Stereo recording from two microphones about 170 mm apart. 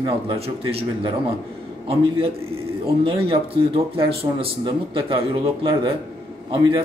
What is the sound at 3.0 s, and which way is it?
A man's voice, 30° right (ahead or behind).